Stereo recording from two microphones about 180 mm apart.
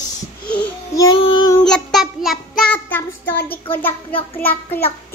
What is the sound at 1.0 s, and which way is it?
Speech, 25° left (ahead or behind).